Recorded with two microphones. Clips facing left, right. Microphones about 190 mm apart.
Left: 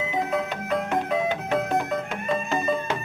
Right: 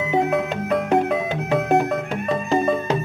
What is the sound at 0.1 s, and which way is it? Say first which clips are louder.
Music: right 9 dB; 60° right (ahead or behind).